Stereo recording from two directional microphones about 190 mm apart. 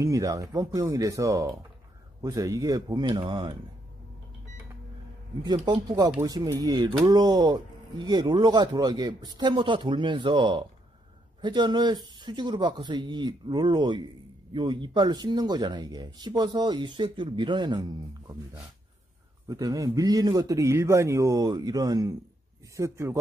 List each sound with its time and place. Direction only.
0.0 s speech: 15° right (ahead or behind)
5.4 s speech: 20° right (ahead or behind)
19.4 s speech: 20° right (ahead or behind)